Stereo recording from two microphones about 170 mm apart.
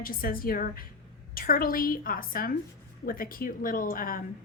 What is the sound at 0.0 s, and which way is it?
A woman's voice, 60° left (ahead or behind).